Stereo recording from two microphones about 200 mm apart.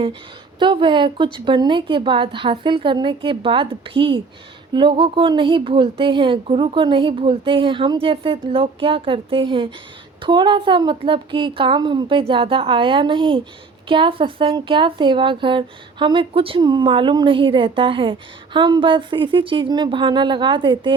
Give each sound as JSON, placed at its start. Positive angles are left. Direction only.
{"t": 0.6, "sound": "speech", "side_deg": -25}